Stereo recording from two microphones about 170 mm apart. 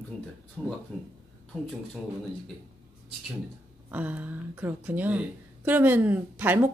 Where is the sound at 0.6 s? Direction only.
5° left (ahead or behind).